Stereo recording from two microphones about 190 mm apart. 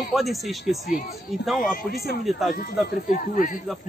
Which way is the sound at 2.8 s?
50° left (ahead or behind).